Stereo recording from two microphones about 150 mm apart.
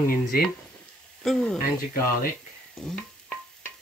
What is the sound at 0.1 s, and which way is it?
Speech, 75° left (ahead or behind).